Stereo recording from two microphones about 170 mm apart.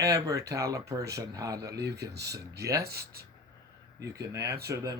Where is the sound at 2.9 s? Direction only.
65° right (ahead or behind).